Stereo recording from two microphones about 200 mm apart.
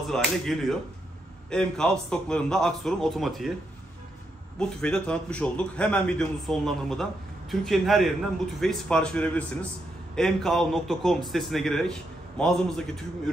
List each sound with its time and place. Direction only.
0.1 s a man's voice: centre (ahead or behind)
4.6 s a man's voice: 5° left (ahead or behind)